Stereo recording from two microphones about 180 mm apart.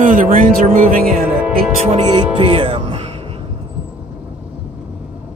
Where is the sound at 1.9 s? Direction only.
35° right (ahead or behind).